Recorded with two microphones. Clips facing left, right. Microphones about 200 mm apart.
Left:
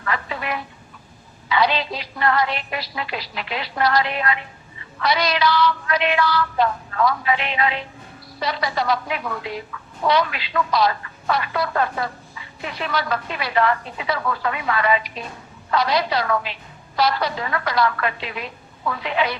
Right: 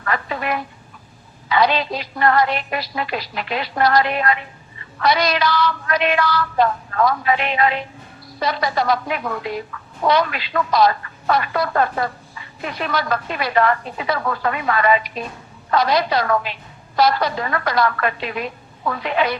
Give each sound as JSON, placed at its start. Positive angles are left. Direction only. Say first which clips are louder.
{"t": 0.0, "sound": "telephone", "louder": "right 3 dB", "side_deg": -45}
{"t": 1.5, "sound": "a woman's voice", "louder": "right 3 dB", "side_deg": -45}